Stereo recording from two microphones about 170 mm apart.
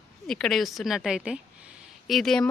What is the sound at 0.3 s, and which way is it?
A woman's voice, 5° left (ahead or behind).